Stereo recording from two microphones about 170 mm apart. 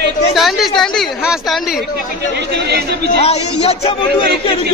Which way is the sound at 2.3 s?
70° right (ahead or behind).